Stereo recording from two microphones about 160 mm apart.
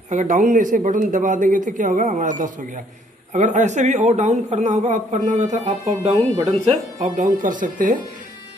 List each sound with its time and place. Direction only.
0.1 s speech: 50° right (ahead or behind)
5.7 s speech: 35° right (ahead or behind)
7.2 s speech: 55° right (ahead or behind)